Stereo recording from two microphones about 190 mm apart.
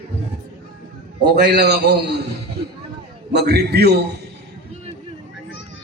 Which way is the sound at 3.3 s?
60° right (ahead or behind).